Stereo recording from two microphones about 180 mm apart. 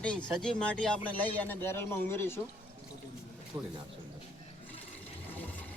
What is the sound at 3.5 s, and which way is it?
Speech, 25° right (ahead or behind).